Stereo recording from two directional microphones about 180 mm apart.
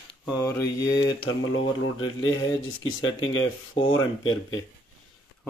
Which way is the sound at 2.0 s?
90° left.